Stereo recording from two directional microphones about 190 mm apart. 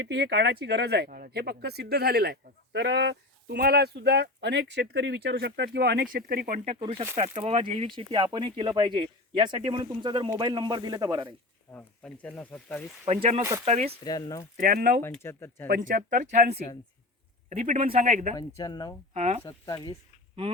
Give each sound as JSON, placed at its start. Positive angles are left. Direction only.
{"t": 0.0, "sound": "speech", "side_deg": -65}
{"t": 6.7, "sound": "speech", "side_deg": -25}
{"t": 11.7, "sound": "speech", "side_deg": 5}
{"t": 13.1, "sound": "a man's voice", "side_deg": -35}
{"t": 13.4, "sound": "speech", "side_deg": -15}
{"t": 13.7, "sound": "a man's voice", "side_deg": -35}
{"t": 14.0, "sound": "speech", "side_deg": 20}
{"t": 14.5, "sound": "speech", "side_deg": -50}
{"t": 15.0, "sound": "speech", "side_deg": 10}
{"t": 15.6, "sound": "a man's voice", "side_deg": -45}
{"t": 18.3, "sound": "speech", "side_deg": 20}
{"t": 19.1, "sound": "a man's voice", "side_deg": -35}
{"t": 19.5, "sound": "speech", "side_deg": 20}